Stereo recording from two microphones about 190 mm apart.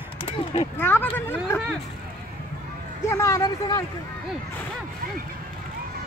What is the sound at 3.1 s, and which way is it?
Speech, 15° left (ahead or behind).